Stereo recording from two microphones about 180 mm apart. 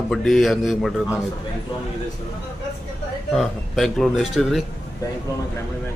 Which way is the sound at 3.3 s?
Centre (ahead or behind).